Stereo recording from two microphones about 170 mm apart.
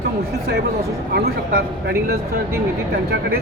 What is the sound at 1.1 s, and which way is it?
A man's voice, 70° right (ahead or behind).